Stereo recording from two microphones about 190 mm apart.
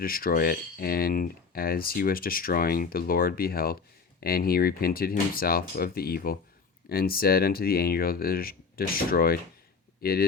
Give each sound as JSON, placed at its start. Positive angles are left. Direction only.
{"t": 0.0, "sound": "speech", "side_deg": 50}